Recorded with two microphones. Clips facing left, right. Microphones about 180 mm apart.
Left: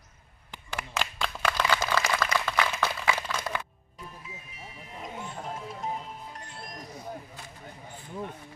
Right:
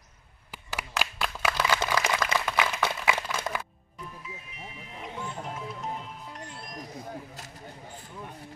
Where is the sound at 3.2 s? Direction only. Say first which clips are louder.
Even; 10° right (ahead or behind).